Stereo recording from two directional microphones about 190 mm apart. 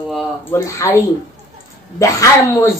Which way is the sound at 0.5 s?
15° left (ahead or behind).